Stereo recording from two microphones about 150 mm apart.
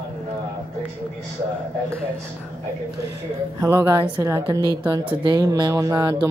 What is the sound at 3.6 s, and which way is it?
A woman's voice, 20° right (ahead or behind).